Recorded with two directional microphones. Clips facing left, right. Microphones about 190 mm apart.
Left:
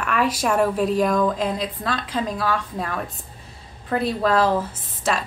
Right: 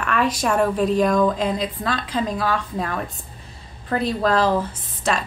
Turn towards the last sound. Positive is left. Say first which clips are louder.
# right 1 dB
turn(degrees=5)  # may be behind; listen again after turning